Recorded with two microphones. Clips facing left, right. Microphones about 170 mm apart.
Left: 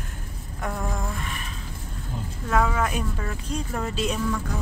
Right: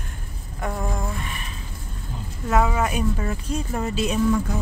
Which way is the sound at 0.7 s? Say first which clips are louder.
Right 2 dB; 10° right (ahead or behind).